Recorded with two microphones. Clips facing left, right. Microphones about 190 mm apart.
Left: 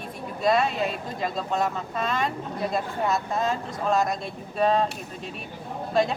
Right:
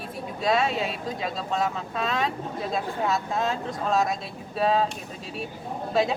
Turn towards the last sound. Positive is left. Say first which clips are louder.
# even
turn(degrees=0)  # may be behind; listen again after turning